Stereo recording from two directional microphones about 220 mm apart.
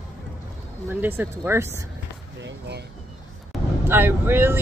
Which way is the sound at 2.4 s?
50° right (ahead or behind).